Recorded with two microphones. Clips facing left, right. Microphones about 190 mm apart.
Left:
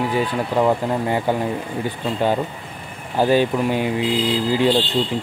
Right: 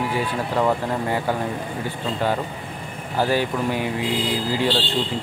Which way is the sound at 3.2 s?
20° left (ahead or behind).